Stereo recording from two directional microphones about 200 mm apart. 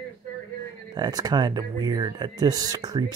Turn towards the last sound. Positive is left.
turn(degrees=-20)  # may be behind; listen again after turning